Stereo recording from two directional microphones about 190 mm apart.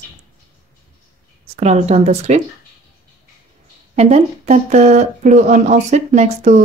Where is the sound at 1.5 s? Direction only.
35° right (ahead or behind).